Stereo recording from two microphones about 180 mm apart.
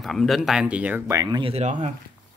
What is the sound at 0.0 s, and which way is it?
Speech, centre (ahead or behind).